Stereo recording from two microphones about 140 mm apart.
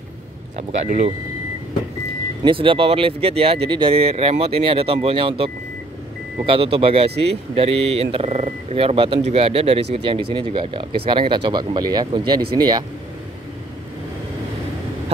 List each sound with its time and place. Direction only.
2.4 s speech: 40° right (ahead or behind)